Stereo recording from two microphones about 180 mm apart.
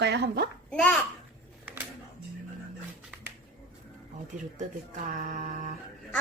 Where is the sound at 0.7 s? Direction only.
5° left (ahead or behind).